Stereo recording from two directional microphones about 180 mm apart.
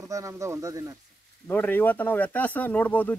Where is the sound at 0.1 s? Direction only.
15° right (ahead or behind).